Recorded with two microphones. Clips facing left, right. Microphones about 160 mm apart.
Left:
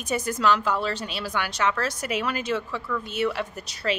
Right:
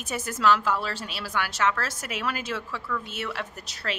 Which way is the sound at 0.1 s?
5° right (ahead or behind).